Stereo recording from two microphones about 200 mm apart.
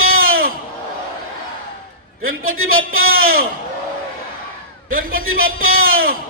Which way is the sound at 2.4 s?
90° right.